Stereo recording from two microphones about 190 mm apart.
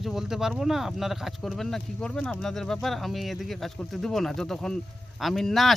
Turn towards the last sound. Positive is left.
turn(degrees=0)  # may be behind; listen again after turning